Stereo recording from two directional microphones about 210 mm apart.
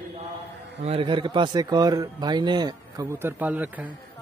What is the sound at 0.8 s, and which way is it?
Speech, 25° right (ahead or behind).